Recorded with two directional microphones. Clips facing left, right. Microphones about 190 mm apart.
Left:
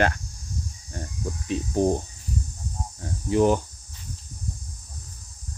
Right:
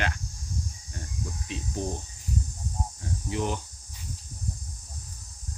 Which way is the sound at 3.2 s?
45° left (ahead or behind).